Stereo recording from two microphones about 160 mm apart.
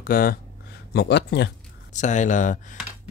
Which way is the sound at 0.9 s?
90° left.